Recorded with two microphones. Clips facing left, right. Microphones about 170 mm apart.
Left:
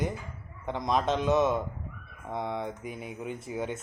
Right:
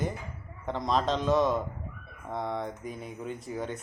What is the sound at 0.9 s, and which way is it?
A man's voice, 15° left (ahead or behind).